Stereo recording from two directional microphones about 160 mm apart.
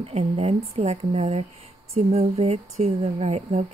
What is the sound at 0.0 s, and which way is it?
Speech, 40° right (ahead or behind).